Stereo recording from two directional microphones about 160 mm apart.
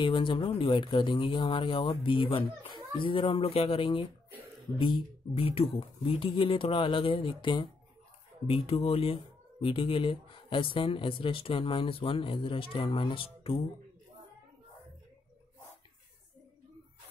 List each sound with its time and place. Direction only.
0.0 s speech: 30° left (ahead or behind)